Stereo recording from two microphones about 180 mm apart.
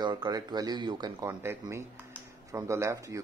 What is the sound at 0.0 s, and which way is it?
Speech, 25° right (ahead or behind).